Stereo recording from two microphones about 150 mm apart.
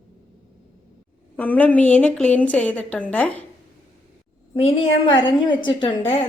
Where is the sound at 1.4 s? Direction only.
10° left (ahead or behind).